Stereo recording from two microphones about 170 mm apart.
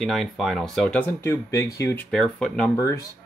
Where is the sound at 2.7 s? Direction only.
15° left (ahead or behind).